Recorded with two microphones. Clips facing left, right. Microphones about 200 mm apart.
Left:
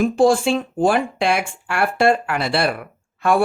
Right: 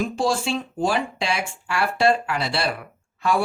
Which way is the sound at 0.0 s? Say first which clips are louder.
Left 8 dB; 55° left (ahead or behind).